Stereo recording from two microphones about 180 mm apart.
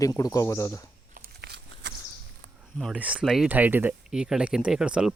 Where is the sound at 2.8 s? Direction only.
5° right (ahead or behind).